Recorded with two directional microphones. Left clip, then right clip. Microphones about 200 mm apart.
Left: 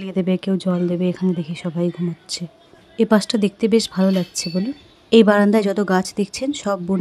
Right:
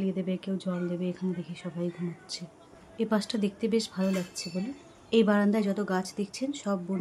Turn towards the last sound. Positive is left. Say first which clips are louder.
# left 10 dB
turn(degrees=45)  # may be behind; listen again after turning